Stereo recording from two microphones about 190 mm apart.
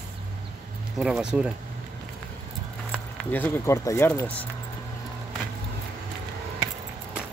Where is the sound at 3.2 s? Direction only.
5° left (ahead or behind).